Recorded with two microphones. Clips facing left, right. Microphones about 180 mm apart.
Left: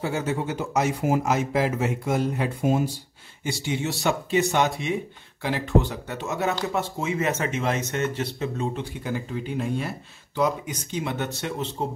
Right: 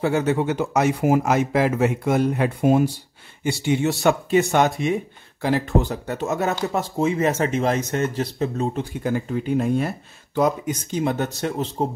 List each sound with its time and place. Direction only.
0.0 s speech: 65° right (ahead or behind); by 11.9 s 40° right (ahead or behind)